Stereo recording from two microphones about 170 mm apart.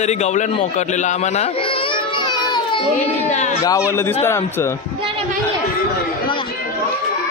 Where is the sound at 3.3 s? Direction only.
45° left (ahead or behind).